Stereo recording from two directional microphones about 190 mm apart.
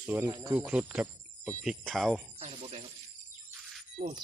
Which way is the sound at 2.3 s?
30° right (ahead or behind).